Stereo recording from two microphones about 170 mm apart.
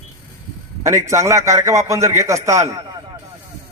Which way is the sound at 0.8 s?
15° right (ahead or behind).